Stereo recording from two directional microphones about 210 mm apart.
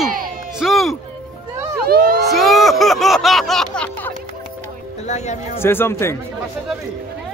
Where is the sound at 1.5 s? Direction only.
10° right (ahead or behind).